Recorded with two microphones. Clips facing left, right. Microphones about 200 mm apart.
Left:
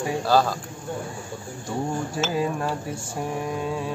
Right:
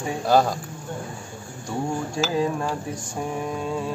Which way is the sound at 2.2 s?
5° left (ahead or behind).